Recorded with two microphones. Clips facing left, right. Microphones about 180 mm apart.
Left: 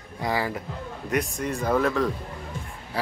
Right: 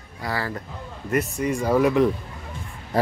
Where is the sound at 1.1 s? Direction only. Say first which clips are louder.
Right 4 dB; 10° right (ahead or behind).